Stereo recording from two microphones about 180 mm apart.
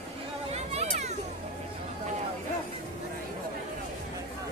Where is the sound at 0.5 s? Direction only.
35° right (ahead or behind).